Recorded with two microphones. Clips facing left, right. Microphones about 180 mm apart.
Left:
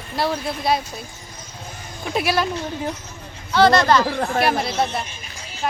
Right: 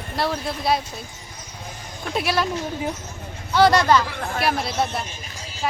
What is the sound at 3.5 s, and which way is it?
Speech, 10° right (ahead or behind).